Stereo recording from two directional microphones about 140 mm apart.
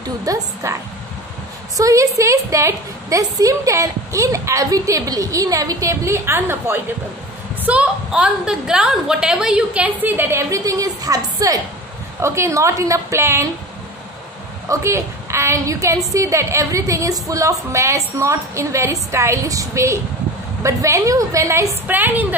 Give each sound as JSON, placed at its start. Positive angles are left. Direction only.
{"t": 0.2, "sound": "a woman's voice", "side_deg": -20}
{"t": 1.8, "sound": "a woman's voice", "side_deg": -25}
{"t": 14.7, "sound": "a woman's voice", "side_deg": -20}